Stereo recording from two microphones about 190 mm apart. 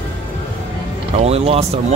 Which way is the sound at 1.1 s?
35° right (ahead or behind).